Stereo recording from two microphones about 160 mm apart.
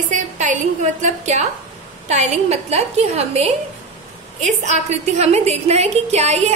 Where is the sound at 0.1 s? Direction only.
50° right (ahead or behind).